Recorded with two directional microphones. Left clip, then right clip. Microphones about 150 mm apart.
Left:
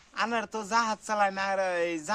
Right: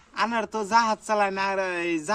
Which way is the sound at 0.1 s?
15° left (ahead or behind).